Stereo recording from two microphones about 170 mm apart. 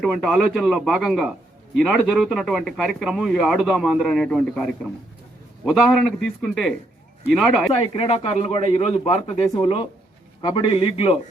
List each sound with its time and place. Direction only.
0.0 s a man's voice: centre (ahead or behind)
7.9 s a man's voice: 35° left (ahead or behind)